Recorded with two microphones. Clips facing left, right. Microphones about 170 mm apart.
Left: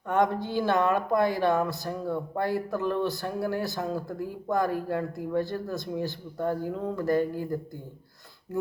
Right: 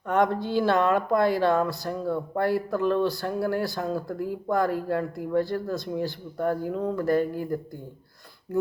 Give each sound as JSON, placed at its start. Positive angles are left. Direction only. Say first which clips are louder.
{"t": 0.1, "sound": "speech", "louder": "right 2 dB", "side_deg": 15}